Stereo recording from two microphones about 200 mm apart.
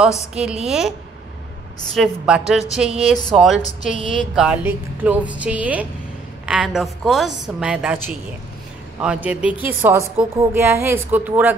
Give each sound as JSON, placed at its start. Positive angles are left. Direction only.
{"t": 0.3, "sound": "a woman's voice", "side_deg": -5}
{"t": 2.0, "sound": "a woman's voice", "side_deg": -5}
{"t": 3.6, "sound": "speech", "side_deg": 40}
{"t": 4.4, "sound": "a woman's voice", "side_deg": -5}